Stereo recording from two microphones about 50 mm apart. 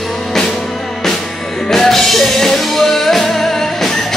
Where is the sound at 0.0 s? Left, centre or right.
Centre.